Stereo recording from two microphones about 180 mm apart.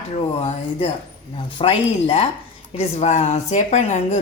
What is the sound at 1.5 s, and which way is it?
Speech, 30° left (ahead or behind).